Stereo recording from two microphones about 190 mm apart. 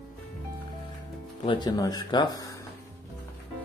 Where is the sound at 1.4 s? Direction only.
25° left (ahead or behind).